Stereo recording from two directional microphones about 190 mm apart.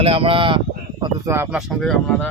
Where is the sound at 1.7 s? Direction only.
Centre (ahead or behind).